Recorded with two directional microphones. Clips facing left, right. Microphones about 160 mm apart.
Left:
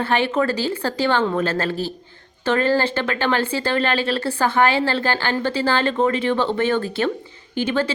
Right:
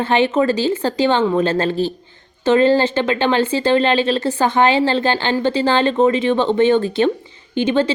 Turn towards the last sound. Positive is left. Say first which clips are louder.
# right 5 dB
turn(degrees=-25)  # may be behind; listen again after turning